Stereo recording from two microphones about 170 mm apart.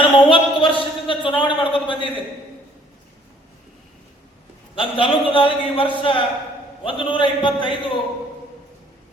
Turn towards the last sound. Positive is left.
turn(degrees=30)  # may be behind; listen again after turning